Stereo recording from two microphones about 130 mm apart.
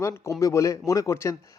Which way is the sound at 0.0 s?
25° left (ahead or behind).